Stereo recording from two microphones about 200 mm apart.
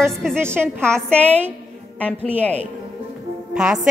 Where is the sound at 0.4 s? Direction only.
10° right (ahead or behind).